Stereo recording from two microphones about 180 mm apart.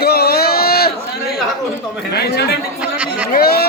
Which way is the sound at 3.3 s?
60° left (ahead or behind).